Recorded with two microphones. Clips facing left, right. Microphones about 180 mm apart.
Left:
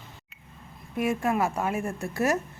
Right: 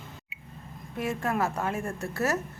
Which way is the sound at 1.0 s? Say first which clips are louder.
Left 3 dB; 10° left (ahead or behind).